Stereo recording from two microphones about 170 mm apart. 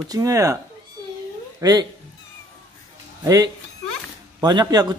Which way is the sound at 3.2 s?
20° right (ahead or behind).